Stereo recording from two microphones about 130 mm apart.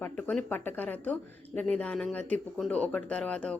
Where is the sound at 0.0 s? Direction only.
10° left (ahead or behind).